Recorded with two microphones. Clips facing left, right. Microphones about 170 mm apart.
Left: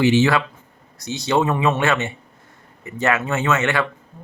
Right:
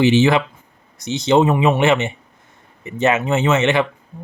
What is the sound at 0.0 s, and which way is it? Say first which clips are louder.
Speech: right 2 dB; 20° right (ahead or behind).